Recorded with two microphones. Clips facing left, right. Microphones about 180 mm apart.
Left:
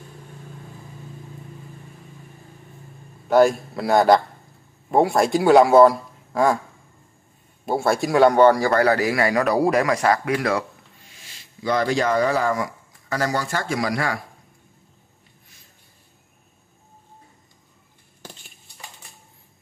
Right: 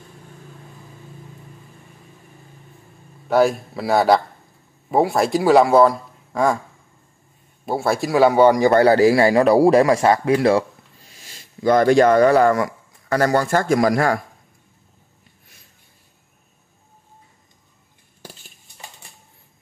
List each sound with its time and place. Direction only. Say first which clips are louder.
3.3 s a man's voice: left 1 dB; centre (ahead or behind)
7.6 s a man's voice: even; centre (ahead or behind); by 10.6 s 25° right (ahead or behind)
11.3 s speech: right 6 dB; 50° right (ahead or behind)